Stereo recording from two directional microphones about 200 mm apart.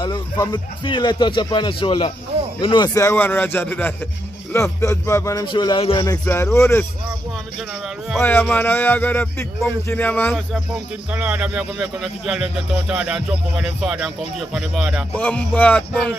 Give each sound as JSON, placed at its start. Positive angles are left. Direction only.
{"t": 0.0, "sound": "speech", "side_deg": 20}
{"t": 6.2, "sound": "speech", "side_deg": 10}
{"t": 8.2, "sound": "speech", "side_deg": 10}
{"t": 11.1, "sound": "speech", "side_deg": -5}